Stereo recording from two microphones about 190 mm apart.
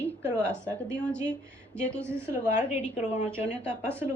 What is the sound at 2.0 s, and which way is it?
A woman's voice, 15° right (ahead or behind).